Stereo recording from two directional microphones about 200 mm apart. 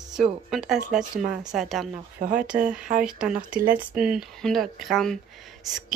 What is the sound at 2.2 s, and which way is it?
Speech, 40° right (ahead or behind).